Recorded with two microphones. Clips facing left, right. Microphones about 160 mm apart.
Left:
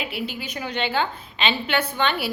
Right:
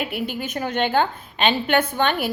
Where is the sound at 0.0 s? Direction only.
50° right (ahead or behind).